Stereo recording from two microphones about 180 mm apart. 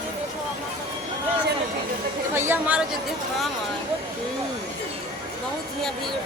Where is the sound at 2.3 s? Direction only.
10° right (ahead or behind).